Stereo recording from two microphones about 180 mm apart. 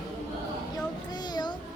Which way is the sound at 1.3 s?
25° left (ahead or behind).